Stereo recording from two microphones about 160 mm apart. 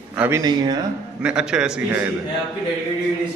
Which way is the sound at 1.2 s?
5° right (ahead or behind).